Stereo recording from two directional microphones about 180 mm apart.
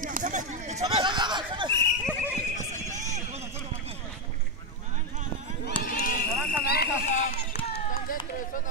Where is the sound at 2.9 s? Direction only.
40° right (ahead or behind).